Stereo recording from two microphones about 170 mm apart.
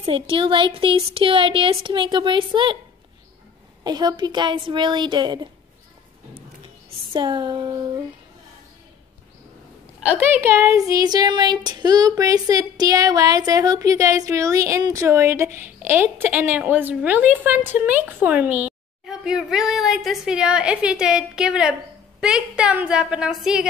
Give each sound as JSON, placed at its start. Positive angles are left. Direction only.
{"t": 0.0, "sound": "speech", "side_deg": -30}
{"t": 3.8, "sound": "a woman's voice", "side_deg": -25}
{"t": 7.1, "sound": "a sound", "side_deg": -25}
{"t": 9.9, "sound": "a woman's voice", "side_deg": -10}